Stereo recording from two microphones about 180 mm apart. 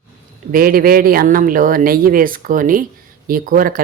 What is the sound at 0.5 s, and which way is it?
Speech, 55° right (ahead or behind).